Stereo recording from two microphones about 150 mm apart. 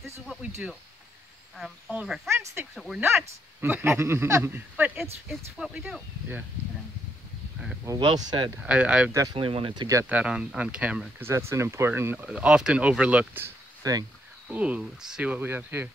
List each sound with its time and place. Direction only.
1.6 s speech: 5° right (ahead or behind)
2.2 s speech: 20° right (ahead or behind)
2.7 s speech: centre (ahead or behind)
3.0 s speech: 15° right (ahead or behind)
7.8 s speech: 25° right (ahead or behind)
8.6 s speech: 10° right (ahead or behind)
9.1 s speech: 20° right (ahead or behind)
9.4 s speech: 35° right (ahead or behind)
10.0 s speech: 10° right (ahead or behind)
13.8 s speech: 25° right (ahead or behind)
14.5 s speech: 10° right (ahead or behind)